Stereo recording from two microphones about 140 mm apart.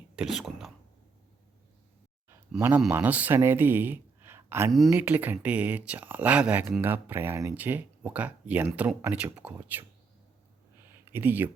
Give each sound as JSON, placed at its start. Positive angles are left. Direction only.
{"t": 0.2, "sound": "speech", "side_deg": 0}
{"t": 2.6, "sound": "speech", "side_deg": -15}
{"t": 11.1, "sound": "speech", "side_deg": -15}